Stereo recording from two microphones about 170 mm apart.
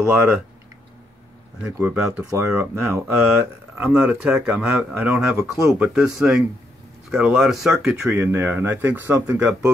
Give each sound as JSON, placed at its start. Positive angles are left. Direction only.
{"t": 0.0, "sound": "speech", "side_deg": -10}
{"t": 2.0, "sound": "speech", "side_deg": -10}
{"t": 5.8, "sound": "speech", "side_deg": -5}